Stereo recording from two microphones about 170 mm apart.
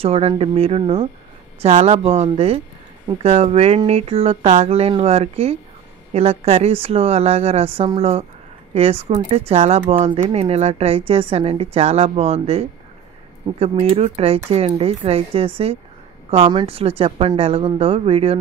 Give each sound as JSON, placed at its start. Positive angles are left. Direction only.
{"t": 0.0, "sound": "speech", "side_deg": -35}